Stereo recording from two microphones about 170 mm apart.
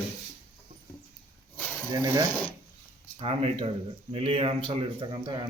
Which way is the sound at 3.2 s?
35° right (ahead or behind).